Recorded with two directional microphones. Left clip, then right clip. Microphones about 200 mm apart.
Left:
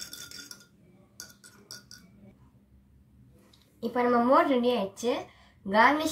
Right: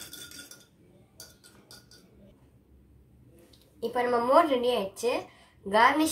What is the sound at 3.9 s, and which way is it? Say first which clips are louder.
A woman's voice: even; 30° right (ahead or behind).